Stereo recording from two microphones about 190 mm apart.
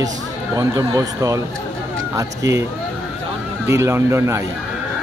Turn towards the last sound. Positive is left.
turn(degrees=-15)  # may be behind; listen again after turning